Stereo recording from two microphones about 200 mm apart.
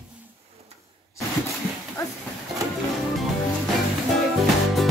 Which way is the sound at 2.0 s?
15° left (ahead or behind).